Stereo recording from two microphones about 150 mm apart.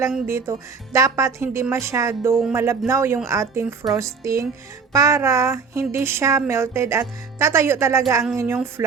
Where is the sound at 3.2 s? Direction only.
20° right (ahead or behind).